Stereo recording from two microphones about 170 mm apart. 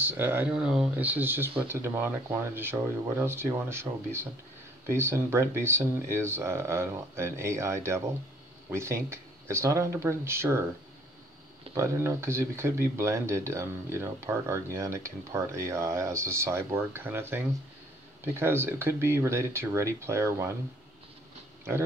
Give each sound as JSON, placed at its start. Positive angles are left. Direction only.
{"t": 0.0, "sound": "speech", "side_deg": -10}
{"t": 11.7, "sound": "speech", "side_deg": -15}